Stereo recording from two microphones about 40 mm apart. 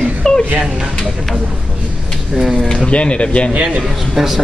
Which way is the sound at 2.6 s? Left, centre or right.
Left.